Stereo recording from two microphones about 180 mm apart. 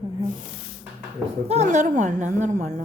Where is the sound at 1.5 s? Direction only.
40° right (ahead or behind).